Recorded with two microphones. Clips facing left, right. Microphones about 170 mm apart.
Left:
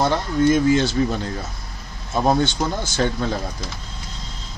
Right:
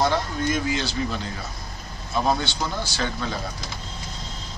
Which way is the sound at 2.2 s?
50° left (ahead or behind).